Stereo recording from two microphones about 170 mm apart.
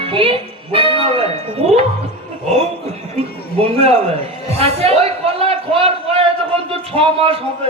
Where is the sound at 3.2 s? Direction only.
35° right (ahead or behind).